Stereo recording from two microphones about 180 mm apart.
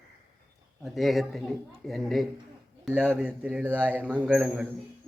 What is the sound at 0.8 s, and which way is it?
A man's voice, centre (ahead or behind).